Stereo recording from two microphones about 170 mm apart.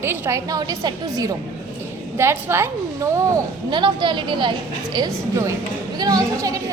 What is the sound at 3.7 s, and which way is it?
A woman's voice, 25° right (ahead or behind).